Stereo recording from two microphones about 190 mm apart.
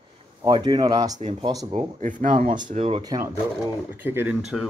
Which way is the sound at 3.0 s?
20° right (ahead or behind).